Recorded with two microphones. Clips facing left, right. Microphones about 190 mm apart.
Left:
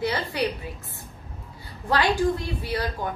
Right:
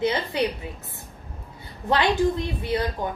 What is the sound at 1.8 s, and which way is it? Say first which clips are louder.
A woman's voice: right 1 dB; 20° right (ahead or behind).